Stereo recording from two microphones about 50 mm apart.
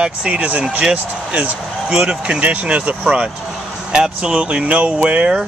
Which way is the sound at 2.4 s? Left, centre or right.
Right.